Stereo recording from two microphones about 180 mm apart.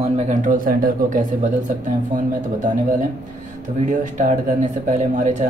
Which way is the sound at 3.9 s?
45° right (ahead or behind).